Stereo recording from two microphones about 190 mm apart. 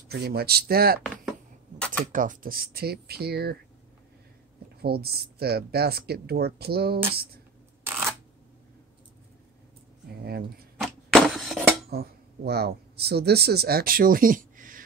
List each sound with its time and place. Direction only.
0.1 s speech: 55° right (ahead or behind)
2.1 s speech: 45° right (ahead or behind)
4.8 s speech: 55° right (ahead or behind)
7.8 s a sound: 5° right (ahead or behind)
10.8 s a sound: centre (ahead or behind)
11.9 s speech: 55° right (ahead or behind)